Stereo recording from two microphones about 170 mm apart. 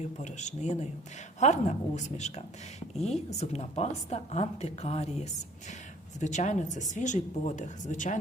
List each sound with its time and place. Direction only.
0.2 s a woman's voice: 45° left (ahead or behind)